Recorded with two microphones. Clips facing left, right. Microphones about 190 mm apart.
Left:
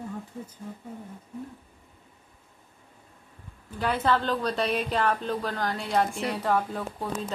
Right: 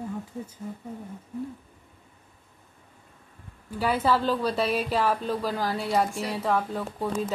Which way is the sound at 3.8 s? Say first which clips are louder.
Right 1 dB; 10° right (ahead or behind).